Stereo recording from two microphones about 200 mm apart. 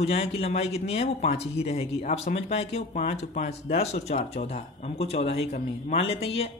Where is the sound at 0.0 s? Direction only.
30° left (ahead or behind).